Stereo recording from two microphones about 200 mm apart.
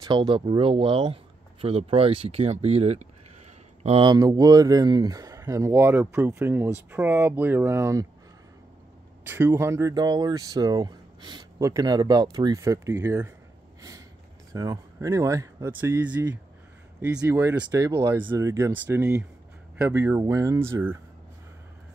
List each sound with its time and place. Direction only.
0.0 s speech: 20° right (ahead or behind)
9.2 s speech: 10° right (ahead or behind)
14.5 s speech: 15° right (ahead or behind)